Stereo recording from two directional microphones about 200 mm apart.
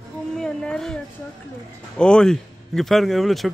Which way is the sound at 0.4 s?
5° left (ahead or behind).